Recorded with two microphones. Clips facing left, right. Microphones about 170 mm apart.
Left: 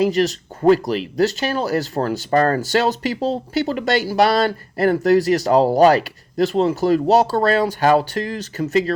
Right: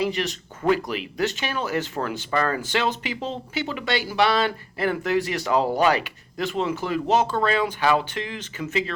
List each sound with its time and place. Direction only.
0.0 s speech: 40° left (ahead or behind)